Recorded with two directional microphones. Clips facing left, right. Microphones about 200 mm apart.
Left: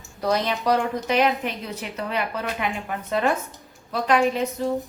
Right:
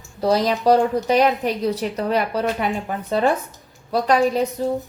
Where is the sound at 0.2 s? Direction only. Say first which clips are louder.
Right 5 dB; 30° right (ahead or behind).